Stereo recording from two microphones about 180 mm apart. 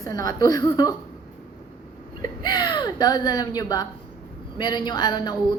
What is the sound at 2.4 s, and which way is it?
A woman's voice, 25° left (ahead or behind).